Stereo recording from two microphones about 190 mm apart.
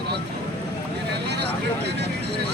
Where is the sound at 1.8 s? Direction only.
60° right (ahead or behind).